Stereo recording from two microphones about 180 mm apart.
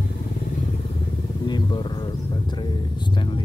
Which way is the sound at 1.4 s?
25° left (ahead or behind).